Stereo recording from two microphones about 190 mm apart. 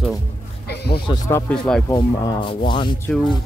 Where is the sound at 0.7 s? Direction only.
55° left (ahead or behind).